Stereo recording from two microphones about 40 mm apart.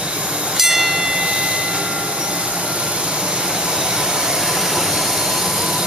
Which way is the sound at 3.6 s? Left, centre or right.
Centre.